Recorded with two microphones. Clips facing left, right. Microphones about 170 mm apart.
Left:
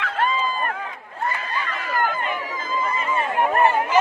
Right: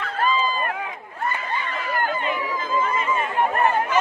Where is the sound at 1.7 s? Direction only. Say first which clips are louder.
Left 2 dB; 40° left (ahead or behind).